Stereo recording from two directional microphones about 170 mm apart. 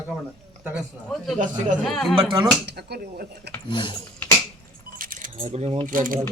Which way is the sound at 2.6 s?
70° right (ahead or behind).